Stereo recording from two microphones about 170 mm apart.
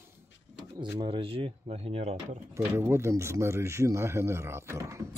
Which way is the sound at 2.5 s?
15° right (ahead or behind).